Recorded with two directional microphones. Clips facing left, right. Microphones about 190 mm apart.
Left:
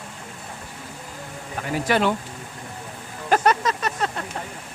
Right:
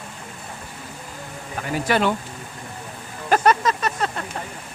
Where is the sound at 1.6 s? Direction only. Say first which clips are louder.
Even; 20° left (ahead or behind).